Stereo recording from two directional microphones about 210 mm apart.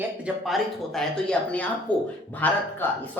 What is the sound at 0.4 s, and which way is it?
A man's voice, centre (ahead or behind).